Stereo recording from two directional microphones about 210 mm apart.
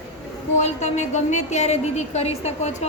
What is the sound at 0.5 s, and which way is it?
A woman's voice, 35° left (ahead or behind).